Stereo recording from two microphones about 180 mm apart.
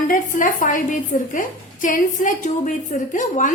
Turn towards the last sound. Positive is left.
turn(degrees=45)  # may be behind; listen again after turning